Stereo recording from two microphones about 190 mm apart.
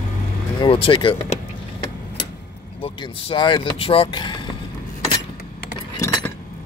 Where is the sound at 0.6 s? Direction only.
25° left (ahead or behind).